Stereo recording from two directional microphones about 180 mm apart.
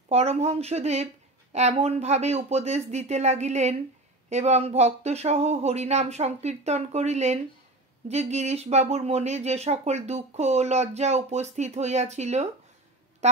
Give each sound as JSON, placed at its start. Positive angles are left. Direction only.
{"t": 0.1, "sound": "speech", "side_deg": -35}